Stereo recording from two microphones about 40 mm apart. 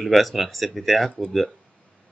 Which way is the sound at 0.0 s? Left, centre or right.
Centre.